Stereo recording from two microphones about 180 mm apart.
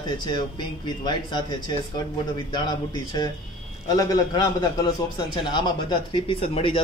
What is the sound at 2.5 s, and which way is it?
A man's voice, 25° left (ahead or behind).